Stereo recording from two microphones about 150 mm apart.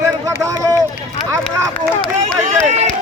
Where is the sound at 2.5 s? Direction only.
50° right (ahead or behind).